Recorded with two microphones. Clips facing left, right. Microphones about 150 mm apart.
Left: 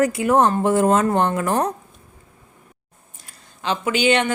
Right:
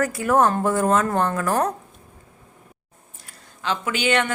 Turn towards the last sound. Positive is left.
turn(degrees=20)  # may be behind; listen again after turning